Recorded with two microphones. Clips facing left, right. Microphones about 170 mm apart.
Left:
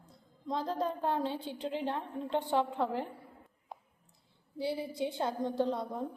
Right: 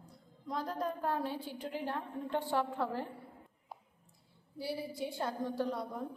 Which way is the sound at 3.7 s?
5° right (ahead or behind).